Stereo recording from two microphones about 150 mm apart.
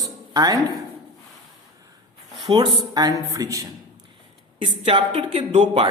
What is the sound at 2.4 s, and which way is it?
Speech, 30° right (ahead or behind).